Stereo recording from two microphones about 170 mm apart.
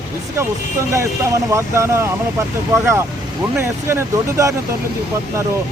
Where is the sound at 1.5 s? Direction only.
15° right (ahead or behind).